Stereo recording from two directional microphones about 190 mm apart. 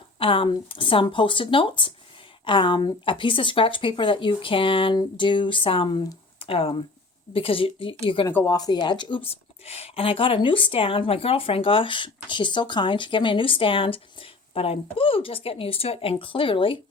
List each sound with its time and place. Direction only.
0.2 s speech: 30° left (ahead or behind)
8.3 s speech: 10° left (ahead or behind)
8.5 s speech: 20° left (ahead or behind)